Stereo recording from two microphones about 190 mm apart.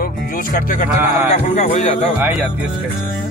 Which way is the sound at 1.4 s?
40° left (ahead or behind).